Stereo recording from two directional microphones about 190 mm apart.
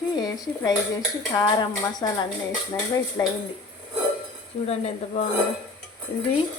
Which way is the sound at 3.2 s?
15° left (ahead or behind).